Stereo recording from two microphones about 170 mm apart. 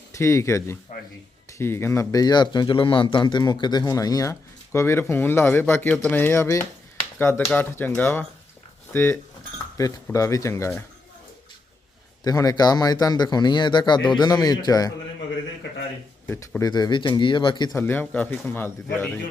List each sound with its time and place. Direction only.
0.1 s a man's voice: 15° left (ahead or behind)
12.2 s speech: 20° left (ahead or behind)
16.2 s speech: 10° left (ahead or behind)
17.7 s a man's voice: 10° left (ahead or behind)